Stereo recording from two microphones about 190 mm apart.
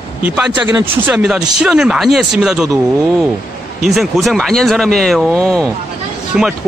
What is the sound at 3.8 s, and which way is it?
A man's voice, centre (ahead or behind).